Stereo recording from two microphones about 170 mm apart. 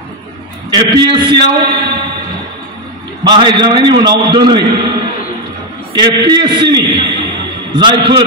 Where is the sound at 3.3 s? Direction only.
25° right (ahead or behind).